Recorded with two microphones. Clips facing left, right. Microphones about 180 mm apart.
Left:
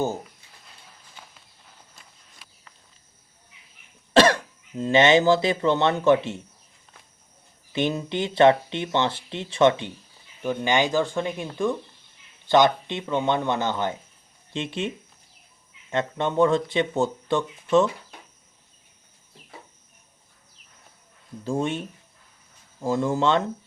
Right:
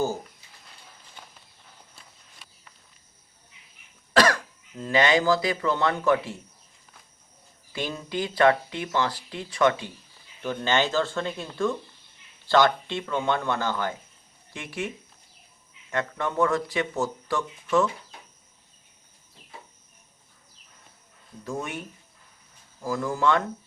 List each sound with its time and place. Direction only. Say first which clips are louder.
4.1 s cough: left 4 dB; 25° left (ahead or behind)
4.8 s speech: left 4 dB; 25° left (ahead or behind)
7.7 s speech: left 6 dB; 20° left (ahead or behind)
21.4 s speech: left 7 dB; 30° left (ahead or behind)